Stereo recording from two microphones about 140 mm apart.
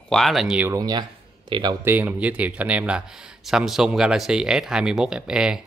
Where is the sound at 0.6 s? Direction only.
30° right (ahead or behind).